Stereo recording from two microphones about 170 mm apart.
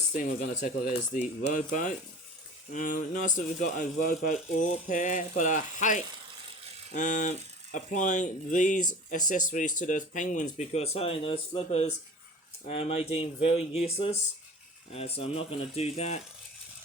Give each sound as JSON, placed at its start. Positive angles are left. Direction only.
{"t": 0.1, "sound": "speech", "side_deg": 50}
{"t": 2.7, "sound": "speech", "side_deg": 50}